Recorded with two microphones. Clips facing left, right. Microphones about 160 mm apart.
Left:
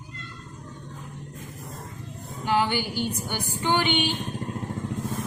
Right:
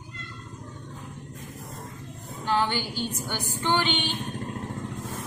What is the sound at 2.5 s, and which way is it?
A woman's voice, 10° left (ahead or behind).